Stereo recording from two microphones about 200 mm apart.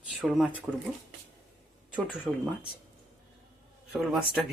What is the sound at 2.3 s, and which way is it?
Speech, centre (ahead or behind).